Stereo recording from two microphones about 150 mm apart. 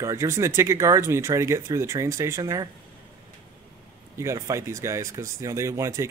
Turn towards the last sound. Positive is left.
turn(degrees=-20)  # may be behind; listen again after turning